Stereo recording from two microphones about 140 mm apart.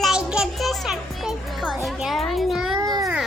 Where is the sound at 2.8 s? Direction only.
30° right (ahead or behind).